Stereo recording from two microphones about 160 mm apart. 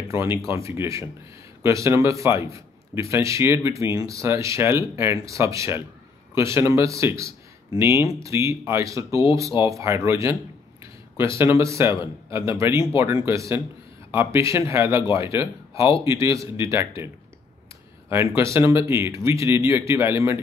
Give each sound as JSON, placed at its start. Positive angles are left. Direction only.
{"t": 0.1, "sound": "a man's voice", "side_deg": -15}
{"t": 18.1, "sound": "speech", "side_deg": -15}